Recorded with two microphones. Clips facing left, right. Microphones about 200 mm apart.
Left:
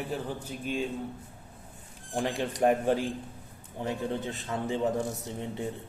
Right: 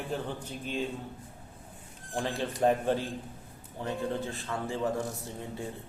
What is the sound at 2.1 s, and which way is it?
A man's voice, 15° left (ahead or behind).